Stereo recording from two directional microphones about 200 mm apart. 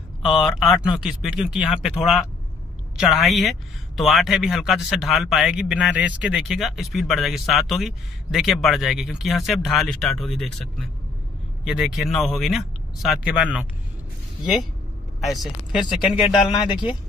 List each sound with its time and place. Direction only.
0.2 s speech: centre (ahead or behind)
15.1 s speech: centre (ahead or behind)
16.3 s speech: 25° left (ahead or behind)